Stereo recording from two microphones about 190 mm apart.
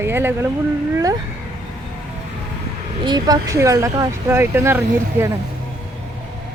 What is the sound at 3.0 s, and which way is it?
Speech, 20° right (ahead or behind).